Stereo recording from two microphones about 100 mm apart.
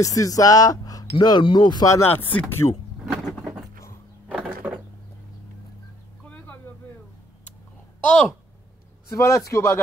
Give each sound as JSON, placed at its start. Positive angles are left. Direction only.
{"t": 0.0, "sound": "speech", "side_deg": 35}
{"t": 1.1, "sound": "speech", "side_deg": 50}
{"t": 1.9, "sound": "a man's voice", "side_deg": 25}
{"t": 3.1, "sound": "a sound", "side_deg": -5}
{"t": 6.2, "sound": "vehicle", "side_deg": 15}
{"t": 8.0, "sound": "a woman's voice", "side_deg": 10}
{"t": 9.1, "sound": "a man's voice", "side_deg": 30}